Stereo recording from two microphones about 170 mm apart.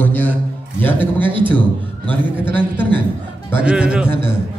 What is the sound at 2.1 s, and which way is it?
Speech, 10° left (ahead or behind).